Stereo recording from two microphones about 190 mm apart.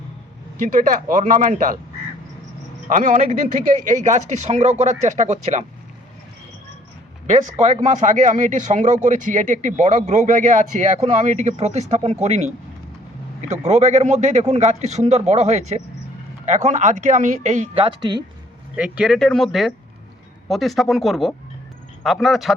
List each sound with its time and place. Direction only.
0.8 s speech: 45° right (ahead or behind)
2.8 s speech: 40° right (ahead or behind)
7.3 s speech: 40° right (ahead or behind)
13.5 s speech: 35° right (ahead or behind)
18.8 s speech: 5° right (ahead or behind)